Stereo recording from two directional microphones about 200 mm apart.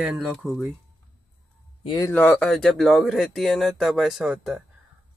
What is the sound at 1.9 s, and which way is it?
Speech, 15° left (ahead or behind).